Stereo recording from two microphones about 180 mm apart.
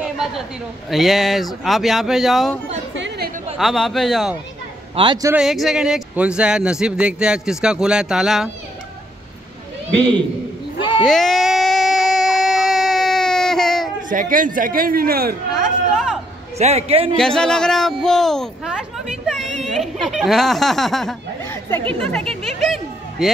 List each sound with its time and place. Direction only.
0.0 s a sound: 5° right (ahead or behind)
0.8 s speech: centre (ahead or behind)
3.5 s speech: centre (ahead or behind)
4.9 s a man's voice: 25° right (ahead or behind)
5.3 s speech: centre (ahead or behind)
10.8 s a sound: 25° left (ahead or behind)
11.1 s a sound: centre (ahead or behind)
14.0 s a man's voice: 50° right (ahead or behind)
15.5 s chatter: centre (ahead or behind)
16.5 s a man's voice: 35° right (ahead or behind)
17.2 s speech: 5° left (ahead or behind)
21.5 s chatter: 15° left (ahead or behind)
21.9 s speech: 5° left (ahead or behind)
22.6 s a sound: centre (ahead or behind)